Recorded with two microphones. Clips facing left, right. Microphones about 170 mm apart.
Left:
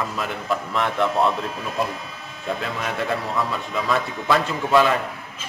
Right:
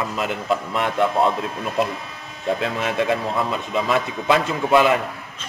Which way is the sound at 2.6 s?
20° right (ahead or behind).